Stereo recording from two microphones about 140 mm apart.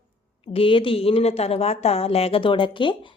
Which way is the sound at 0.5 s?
40° left (ahead or behind).